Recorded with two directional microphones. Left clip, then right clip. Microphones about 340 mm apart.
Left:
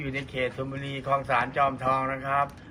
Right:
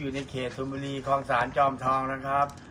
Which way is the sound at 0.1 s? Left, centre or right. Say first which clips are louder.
Left 3 dB; centre.